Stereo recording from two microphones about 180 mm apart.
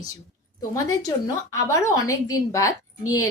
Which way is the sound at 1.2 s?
15° left (ahead or behind).